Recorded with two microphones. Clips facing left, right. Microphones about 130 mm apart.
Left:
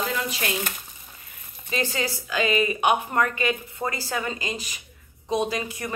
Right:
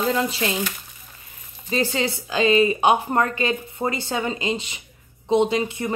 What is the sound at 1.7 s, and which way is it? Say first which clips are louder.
A woman's voice: right 4 dB; 30° right (ahead or behind).